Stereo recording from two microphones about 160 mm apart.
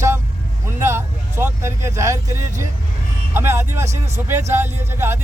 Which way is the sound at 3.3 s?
15° right (ahead or behind).